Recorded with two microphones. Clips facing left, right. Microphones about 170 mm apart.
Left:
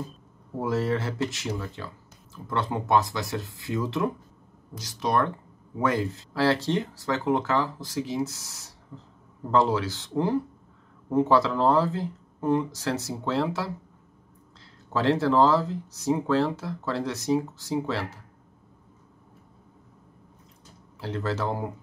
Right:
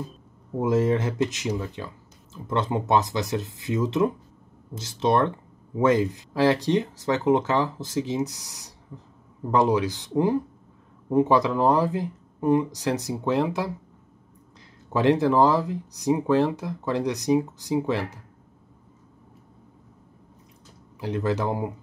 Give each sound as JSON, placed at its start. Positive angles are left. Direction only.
{"t": 0.6, "sound": "speech", "side_deg": -20}
{"t": 14.9, "sound": "speech", "side_deg": -15}
{"t": 21.0, "sound": "speech", "side_deg": -15}